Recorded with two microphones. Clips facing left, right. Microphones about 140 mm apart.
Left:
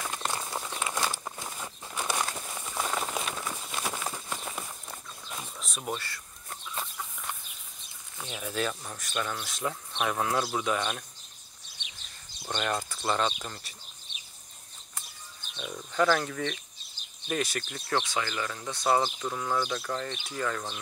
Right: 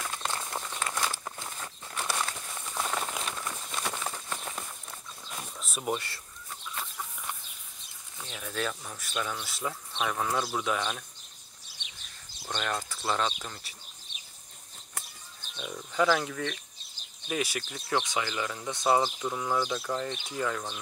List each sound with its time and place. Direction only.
0.3 s a sound: 10° left (ahead or behind)
2.6 s a sound: 5° left (ahead or behind)
5.9 s speech: 25° right (ahead or behind)
8.2 s speech: 10° left (ahead or behind)
9.9 s speech: 10° left (ahead or behind)
12.4 s speech: 5° left (ahead or behind)
15.5 s speech: centre (ahead or behind)
18.0 s speech: 15° right (ahead or behind)